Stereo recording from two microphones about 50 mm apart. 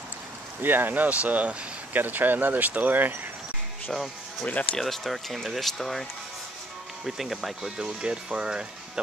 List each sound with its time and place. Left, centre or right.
0.6 s speech: right
3.9 s speech: centre
4.5 s speech: left
4.7 s speech: centre
7.1 s speech: centre